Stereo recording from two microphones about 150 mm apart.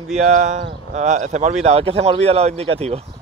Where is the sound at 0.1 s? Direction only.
50° right (ahead or behind).